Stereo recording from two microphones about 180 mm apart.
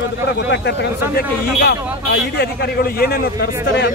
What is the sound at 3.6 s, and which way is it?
Speech, 70° left (ahead or behind).